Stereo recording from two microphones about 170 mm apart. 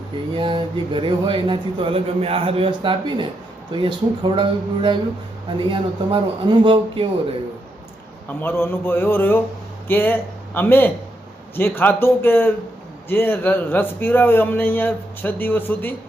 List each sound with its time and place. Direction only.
0.3 s speech: 30° right (ahead or behind)
8.3 s a man's voice: 10° left (ahead or behind)